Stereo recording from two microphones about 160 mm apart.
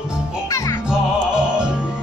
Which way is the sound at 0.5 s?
20° left (ahead or behind).